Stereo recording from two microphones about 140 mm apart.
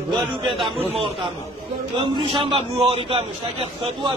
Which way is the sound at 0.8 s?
45° right (ahead or behind).